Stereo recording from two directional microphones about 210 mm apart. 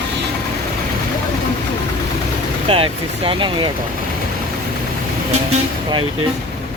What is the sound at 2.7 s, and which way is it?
Speech, 25° right (ahead or behind).